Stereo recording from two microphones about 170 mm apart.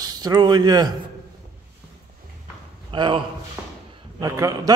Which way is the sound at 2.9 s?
30° right (ahead or behind).